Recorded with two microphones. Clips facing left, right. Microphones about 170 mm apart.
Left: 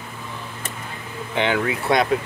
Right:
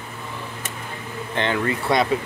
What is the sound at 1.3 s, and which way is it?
Speech, 5° left (ahead or behind).